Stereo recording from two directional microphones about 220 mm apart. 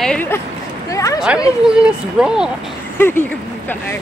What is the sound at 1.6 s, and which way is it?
Speech, 5° right (ahead or behind).